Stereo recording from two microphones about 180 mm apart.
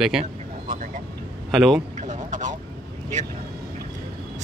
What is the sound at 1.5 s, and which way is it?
Speech, centre (ahead or behind).